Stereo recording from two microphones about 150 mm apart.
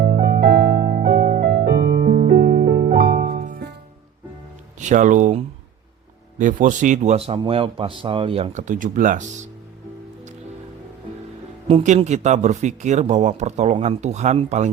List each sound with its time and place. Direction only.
0.0 s music: 90° right
2.0 s music: 50° right (ahead or behind)
2.3 s music: 85° right
3.3 s music: 60° right (ahead or behind)
4.8 s speech: 55° right (ahead or behind)
6.4 s a man's voice: 55° right (ahead or behind); by 8.6 s 40° right (ahead or behind)
8.6 s speech: 60° right (ahead or behind)
11.7 s speech: 50° right (ahead or behind)